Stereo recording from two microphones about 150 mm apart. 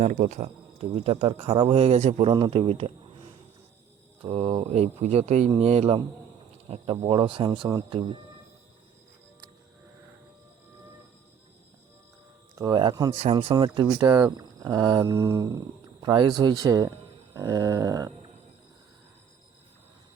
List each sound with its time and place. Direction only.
0.0 s speech: 60° right (ahead or behind)
0.4 s speech: 40° right (ahead or behind)
4.2 s speech: 40° right (ahead or behind)
12.5 s speech: 25° right (ahead or behind)
16.0 s speech: 30° right (ahead or behind)